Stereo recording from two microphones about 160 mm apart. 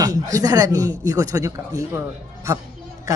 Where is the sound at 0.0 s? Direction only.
20° right (ahead or behind).